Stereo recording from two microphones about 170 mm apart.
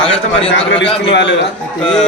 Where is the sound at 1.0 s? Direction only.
90° left.